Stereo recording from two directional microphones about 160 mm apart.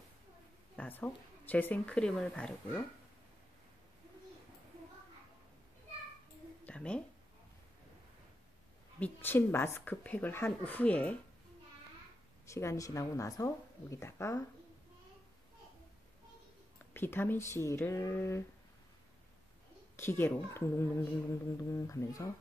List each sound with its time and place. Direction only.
0.7 s a woman's voice: 10° left (ahead or behind)
6.6 s a sound: 5° left (ahead or behind)
9.0 s a woman's voice: 15° left (ahead or behind)
12.4 s speech: 20° left (ahead or behind)
16.9 s a woman's voice: 15° left (ahead or behind)
20.0 s a woman's voice: 15° left (ahead or behind)